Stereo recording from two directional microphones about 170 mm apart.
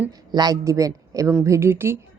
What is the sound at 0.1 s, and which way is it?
A woman's voice, 25° right (ahead or behind).